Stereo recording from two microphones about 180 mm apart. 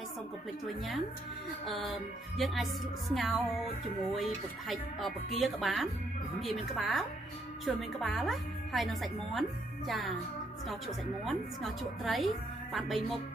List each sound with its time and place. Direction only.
0.7 s speech: centre (ahead or behind)
11.2 s speech: centre (ahead or behind)